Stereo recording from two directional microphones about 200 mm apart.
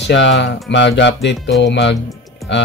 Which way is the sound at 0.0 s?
65° left (ahead or behind).